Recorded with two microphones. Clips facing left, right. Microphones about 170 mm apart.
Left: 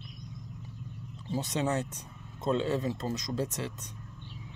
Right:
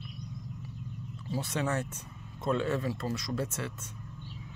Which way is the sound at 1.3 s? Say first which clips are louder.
Left 2 dB; 20° left (ahead or behind).